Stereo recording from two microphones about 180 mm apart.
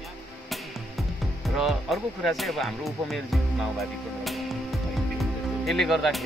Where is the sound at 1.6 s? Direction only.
Centre (ahead or behind).